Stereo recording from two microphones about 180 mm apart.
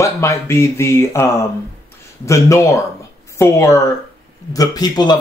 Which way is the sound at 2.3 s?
15° left (ahead or behind).